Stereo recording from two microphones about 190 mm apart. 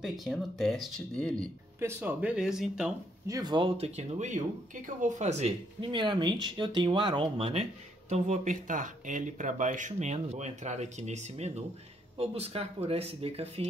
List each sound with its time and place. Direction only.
0.0 s speech: centre (ahead or behind)
1.8 s speech: 10° right (ahead or behind)
3.3 s speech: 20° right (ahead or behind)
8.1 s speech: 40° right (ahead or behind)